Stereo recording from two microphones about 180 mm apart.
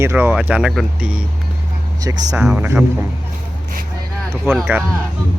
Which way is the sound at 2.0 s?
20° right (ahead or behind).